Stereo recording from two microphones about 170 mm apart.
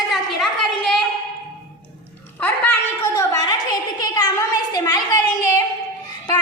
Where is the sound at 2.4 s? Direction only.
10° left (ahead or behind).